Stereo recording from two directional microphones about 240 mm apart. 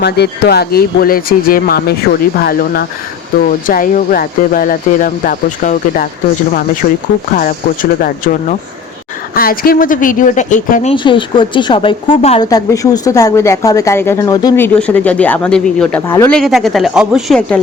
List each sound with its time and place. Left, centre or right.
0.0 s speech: left
10.9 s speech: left; by 17.6 s centre